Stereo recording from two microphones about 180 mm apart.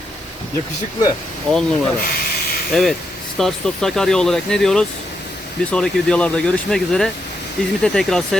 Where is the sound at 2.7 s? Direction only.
Centre (ahead or behind).